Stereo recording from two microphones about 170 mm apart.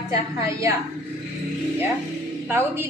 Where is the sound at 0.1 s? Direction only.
20° right (ahead or behind).